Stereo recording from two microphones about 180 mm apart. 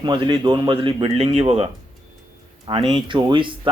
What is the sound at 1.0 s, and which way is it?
Speech, 35° right (ahead or behind).